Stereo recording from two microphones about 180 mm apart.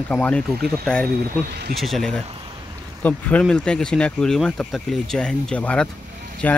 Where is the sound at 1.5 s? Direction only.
65° right (ahead or behind).